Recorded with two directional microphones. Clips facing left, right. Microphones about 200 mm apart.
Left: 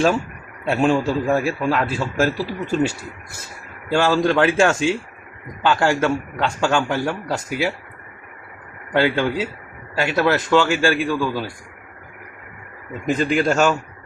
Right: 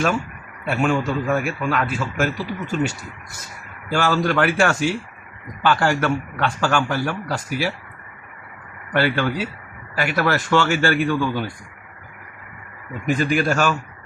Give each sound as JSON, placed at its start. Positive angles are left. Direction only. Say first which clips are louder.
{"t": 0.7, "sound": "speech", "louder": "left 3 dB", "side_deg": 30}
{"t": 3.9, "sound": "a man's voice", "louder": "left 3 dB", "side_deg": 20}
{"t": 9.0, "sound": "a man's voice", "louder": "left 2 dB", "side_deg": 20}
{"t": 13.1, "sound": "a man's voice", "louder": "left 1 dB", "side_deg": 20}